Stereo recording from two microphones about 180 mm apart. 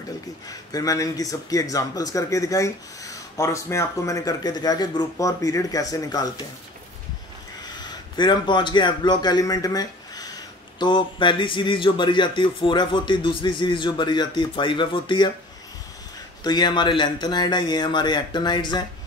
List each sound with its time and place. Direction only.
0.5 s speech: 20° left (ahead or behind)
7.7 s a man's voice: 25° left (ahead or behind)
16.4 s speech: 25° left (ahead or behind)